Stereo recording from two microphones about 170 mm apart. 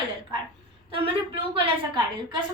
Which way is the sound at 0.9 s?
30° right (ahead or behind).